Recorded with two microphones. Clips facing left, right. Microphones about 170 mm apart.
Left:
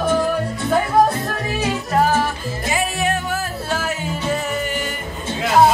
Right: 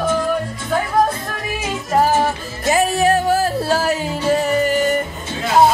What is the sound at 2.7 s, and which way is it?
Music, 40° right (ahead or behind).